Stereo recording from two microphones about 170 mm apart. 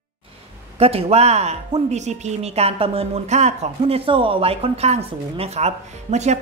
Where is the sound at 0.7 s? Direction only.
35° right (ahead or behind).